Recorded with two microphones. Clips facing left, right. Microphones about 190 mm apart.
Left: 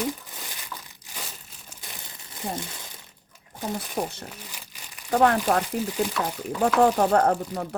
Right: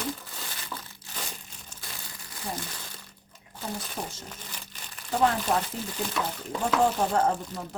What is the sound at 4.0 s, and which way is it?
Speech, 55° left (ahead or behind).